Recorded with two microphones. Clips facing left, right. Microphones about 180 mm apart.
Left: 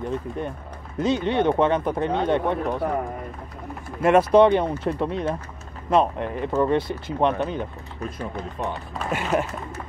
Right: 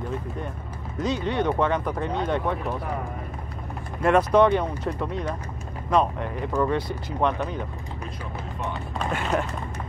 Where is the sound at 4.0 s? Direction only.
25° left (ahead or behind).